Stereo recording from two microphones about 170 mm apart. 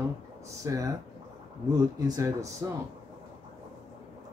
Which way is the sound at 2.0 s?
20° right (ahead or behind).